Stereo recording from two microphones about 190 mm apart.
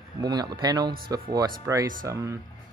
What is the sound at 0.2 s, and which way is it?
Speech, 20° right (ahead or behind).